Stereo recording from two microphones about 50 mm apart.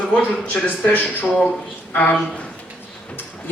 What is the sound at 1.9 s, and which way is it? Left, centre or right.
Speech, left.